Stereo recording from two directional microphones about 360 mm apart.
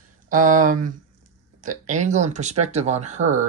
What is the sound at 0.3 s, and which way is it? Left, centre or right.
Speech, right.